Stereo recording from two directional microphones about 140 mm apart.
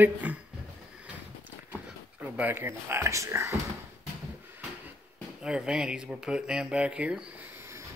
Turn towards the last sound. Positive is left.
turn(degrees=-10)  # may be behind; listen again after turning